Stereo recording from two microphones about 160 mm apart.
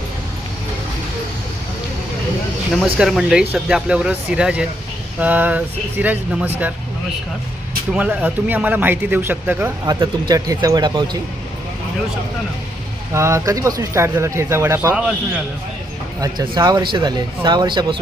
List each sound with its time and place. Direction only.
3.0 s speech: centre (ahead or behind)
7.9 s speech: 10° right (ahead or behind); by 11.2 s 25° right (ahead or behind)
13.1 s speech: 20° right (ahead or behind)
16.2 s speech: 25° right (ahead or behind)